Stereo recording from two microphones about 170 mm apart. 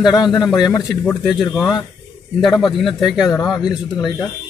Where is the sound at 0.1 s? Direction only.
25° left (ahead or behind).